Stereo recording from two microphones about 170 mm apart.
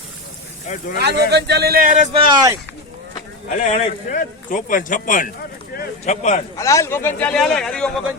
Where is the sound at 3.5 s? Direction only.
45° left (ahead or behind).